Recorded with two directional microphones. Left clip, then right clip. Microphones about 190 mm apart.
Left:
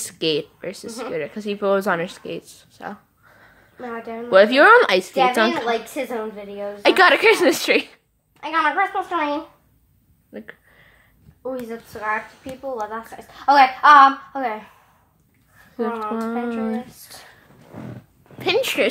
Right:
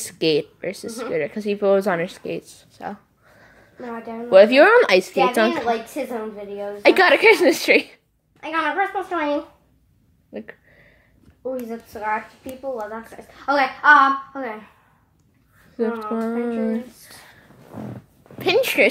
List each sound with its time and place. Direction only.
0.0 s speech: 5° right (ahead or behind)
3.8 s a woman's voice: 40° left (ahead or behind)
4.3 s a woman's voice: centre (ahead or behind)
5.7 s a woman's voice: 35° left (ahead or behind)
6.8 s a woman's voice: centre (ahead or behind)
8.4 s a child's voice: 20° left (ahead or behind)
10.3 s a sound: 5° right (ahead or behind)
11.9 s a child's voice: 20° left (ahead or behind)
13.1 s a woman's voice: 40° left (ahead or behind)
16.1 s a woman's voice: centre (ahead or behind)
18.4 s speech: 10° right (ahead or behind)